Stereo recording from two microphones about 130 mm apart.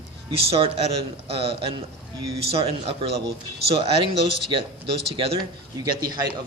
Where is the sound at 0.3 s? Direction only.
45° right (ahead or behind).